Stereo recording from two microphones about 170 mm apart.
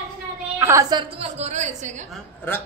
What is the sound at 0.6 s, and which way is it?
Speech, 20° right (ahead or behind).